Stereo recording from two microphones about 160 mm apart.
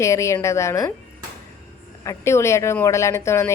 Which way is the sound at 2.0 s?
20° left (ahead or behind).